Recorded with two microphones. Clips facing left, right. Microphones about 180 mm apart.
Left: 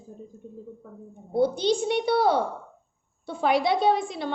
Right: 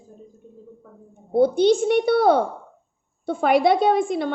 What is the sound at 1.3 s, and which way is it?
A woman's voice, 55° right (ahead or behind).